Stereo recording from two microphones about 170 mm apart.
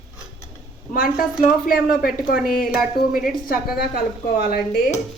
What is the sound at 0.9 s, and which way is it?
Speech, 55° left (ahead or behind).